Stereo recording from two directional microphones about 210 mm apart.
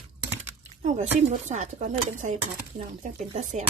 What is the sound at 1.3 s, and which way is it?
Speech, 35° right (ahead or behind).